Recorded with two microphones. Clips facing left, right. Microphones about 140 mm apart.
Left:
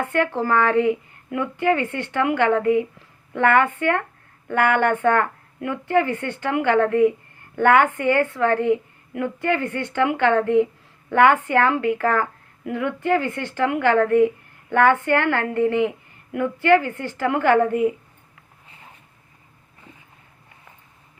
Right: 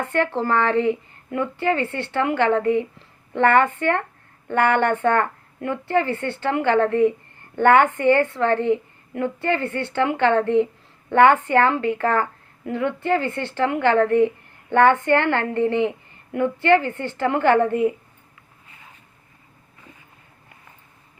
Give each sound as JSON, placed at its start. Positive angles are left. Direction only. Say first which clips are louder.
{"t": 0.0, "sound": "a woman's voice", "louder": "even", "side_deg": 10}
{"t": 14.7, "sound": "a woman's voice", "louder": "right 1 dB", "side_deg": -25}
{"t": 14.9, "sound": "a woman's voice", "louder": "right 1 dB", "side_deg": 10}